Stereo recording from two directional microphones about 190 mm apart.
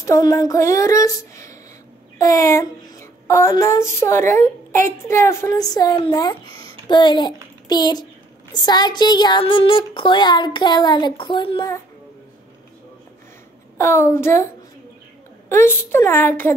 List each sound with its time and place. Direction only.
0.0 s child singing: 15° left (ahead or behind)
6.9 s speech: 25° left (ahead or behind)
13.7 s child singing: 15° left (ahead or behind)
15.5 s child singing: 10° left (ahead or behind)